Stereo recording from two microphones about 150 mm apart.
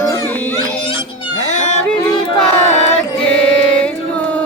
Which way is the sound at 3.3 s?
5° left (ahead or behind).